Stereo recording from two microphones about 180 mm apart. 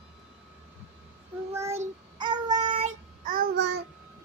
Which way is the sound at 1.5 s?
15° right (ahead or behind).